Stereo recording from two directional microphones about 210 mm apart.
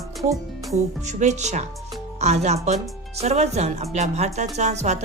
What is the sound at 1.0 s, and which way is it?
A woman's voice, 35° right (ahead or behind).